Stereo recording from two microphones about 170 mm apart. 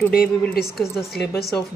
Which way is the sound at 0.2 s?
5° left (ahead or behind).